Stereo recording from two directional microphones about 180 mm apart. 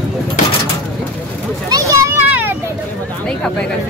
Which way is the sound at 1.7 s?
20° right (ahead or behind).